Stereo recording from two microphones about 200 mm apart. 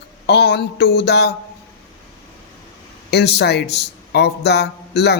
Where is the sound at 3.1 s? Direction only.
55° left (ahead or behind).